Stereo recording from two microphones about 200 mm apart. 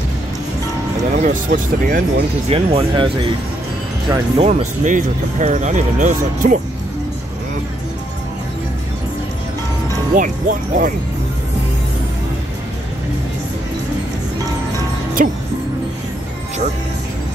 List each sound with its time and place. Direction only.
1.1 s speech: 35° right (ahead or behind)
1.5 s speech: 55° right (ahead or behind)
2.5 s speech: 30° right (ahead or behind)
4.4 s speech: 30° right (ahead or behind)
10.1 s speech: 40° right (ahead or behind)
15.2 s speech: 40° right (ahead or behind)